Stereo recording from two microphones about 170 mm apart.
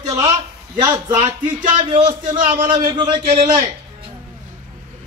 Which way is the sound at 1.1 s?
45° right (ahead or behind).